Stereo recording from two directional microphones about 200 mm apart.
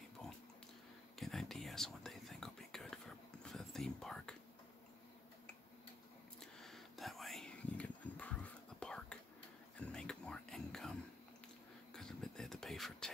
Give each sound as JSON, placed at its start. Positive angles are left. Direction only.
{"t": 1.1, "sound": "whispering", "side_deg": 0}
{"t": 6.4, "sound": "whispering", "side_deg": 0}
{"t": 9.8, "sound": "a sound", "side_deg": 5}